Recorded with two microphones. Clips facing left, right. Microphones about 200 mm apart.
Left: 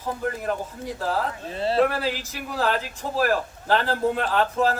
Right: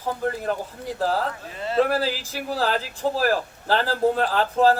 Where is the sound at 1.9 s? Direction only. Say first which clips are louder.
Right 3 dB; 35° right (ahead or behind).